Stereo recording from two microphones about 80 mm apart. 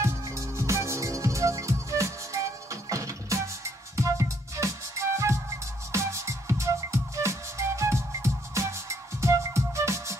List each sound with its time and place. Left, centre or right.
0.0 s music: right